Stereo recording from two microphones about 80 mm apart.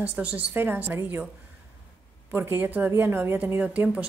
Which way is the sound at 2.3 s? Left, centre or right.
Right.